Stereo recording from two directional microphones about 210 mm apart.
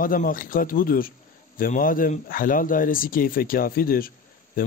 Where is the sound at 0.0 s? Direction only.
40° left (ahead or behind).